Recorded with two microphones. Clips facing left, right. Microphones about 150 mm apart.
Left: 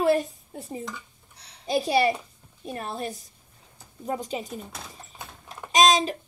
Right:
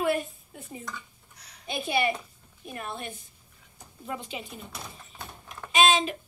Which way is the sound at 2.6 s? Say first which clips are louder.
Left 5 dB; 30° left (ahead or behind).